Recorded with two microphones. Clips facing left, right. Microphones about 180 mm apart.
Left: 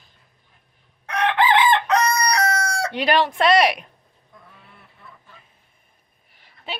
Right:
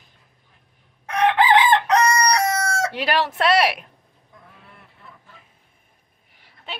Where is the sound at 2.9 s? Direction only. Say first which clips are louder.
Left 3 dB; 5° right (ahead or behind).